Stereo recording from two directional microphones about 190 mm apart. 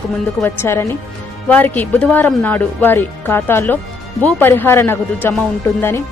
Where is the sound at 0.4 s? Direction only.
15° left (ahead or behind).